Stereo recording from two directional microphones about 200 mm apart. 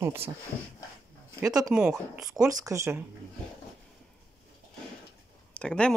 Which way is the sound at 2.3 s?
15° right (ahead or behind).